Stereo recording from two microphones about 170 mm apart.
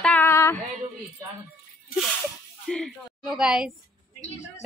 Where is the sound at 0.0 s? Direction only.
10° left (ahead or behind).